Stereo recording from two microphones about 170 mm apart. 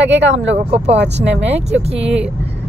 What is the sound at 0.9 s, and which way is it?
Speech, 90° right.